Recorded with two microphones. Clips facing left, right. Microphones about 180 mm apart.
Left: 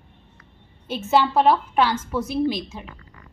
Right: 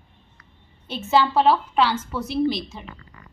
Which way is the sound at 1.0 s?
10° left (ahead or behind).